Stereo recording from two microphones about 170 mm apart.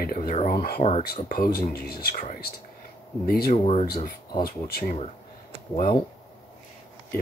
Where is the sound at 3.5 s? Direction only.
35° left (ahead or behind).